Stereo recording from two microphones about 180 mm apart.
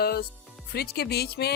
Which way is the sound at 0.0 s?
60° left (ahead or behind).